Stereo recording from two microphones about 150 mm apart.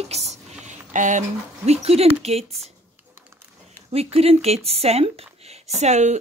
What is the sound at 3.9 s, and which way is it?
Speech, 40° right (ahead or behind).